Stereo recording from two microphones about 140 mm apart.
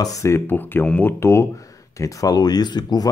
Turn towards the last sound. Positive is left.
turn(degrees=30)  # may be behind; listen again after turning